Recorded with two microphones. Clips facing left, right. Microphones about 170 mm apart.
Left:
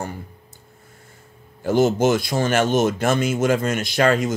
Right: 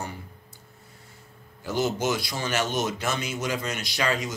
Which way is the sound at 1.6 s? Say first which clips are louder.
Left 9 dB; 50° left (ahead or behind).